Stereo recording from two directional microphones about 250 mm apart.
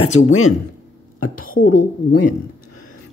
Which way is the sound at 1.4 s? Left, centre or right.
Left.